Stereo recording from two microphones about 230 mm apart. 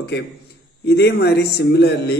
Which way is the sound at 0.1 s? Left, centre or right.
Left.